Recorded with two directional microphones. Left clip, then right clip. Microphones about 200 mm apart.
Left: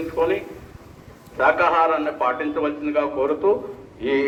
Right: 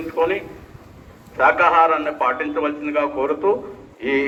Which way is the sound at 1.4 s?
15° right (ahead or behind).